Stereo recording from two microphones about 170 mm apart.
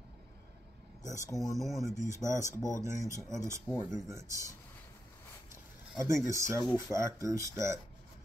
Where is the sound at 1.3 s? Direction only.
Centre (ahead or behind).